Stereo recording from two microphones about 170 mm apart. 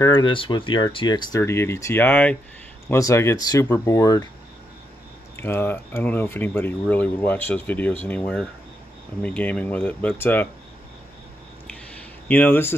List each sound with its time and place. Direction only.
0.0 s speech: 25° left (ahead or behind)
5.3 s speech: 15° left (ahead or behind)
12.0 s a sound: 10° left (ahead or behind)